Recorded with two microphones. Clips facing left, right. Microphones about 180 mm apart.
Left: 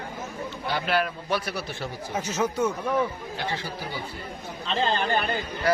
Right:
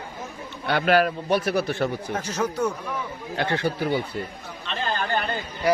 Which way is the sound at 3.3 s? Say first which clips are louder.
Right 7 dB; 65° right (ahead or behind).